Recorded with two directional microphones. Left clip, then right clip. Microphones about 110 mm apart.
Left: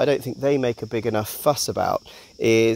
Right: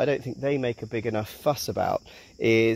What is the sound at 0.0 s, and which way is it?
Speech, 50° left (ahead or behind).